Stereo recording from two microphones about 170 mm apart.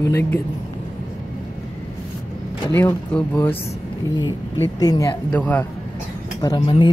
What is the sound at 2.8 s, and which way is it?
Speech, 10° left (ahead or behind).